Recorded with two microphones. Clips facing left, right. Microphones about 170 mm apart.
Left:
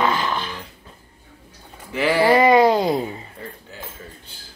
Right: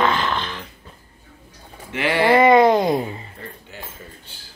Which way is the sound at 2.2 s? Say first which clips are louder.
Right 2 dB; 10° left (ahead or behind).